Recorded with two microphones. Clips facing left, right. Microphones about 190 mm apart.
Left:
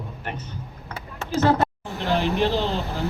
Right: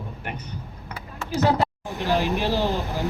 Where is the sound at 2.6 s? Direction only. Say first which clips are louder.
Right 1 dB; 15° right (ahead or behind).